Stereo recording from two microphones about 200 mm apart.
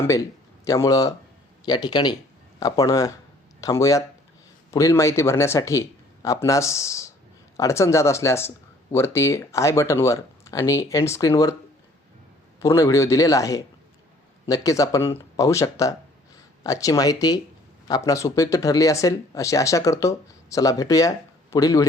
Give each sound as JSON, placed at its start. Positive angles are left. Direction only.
{"t": 0.1, "sound": "speech", "side_deg": 15}
{"t": 12.6, "sound": "speech", "side_deg": 15}